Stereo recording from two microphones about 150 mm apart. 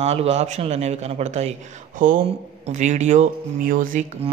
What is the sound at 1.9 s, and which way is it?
Speech, 65° right (ahead or behind).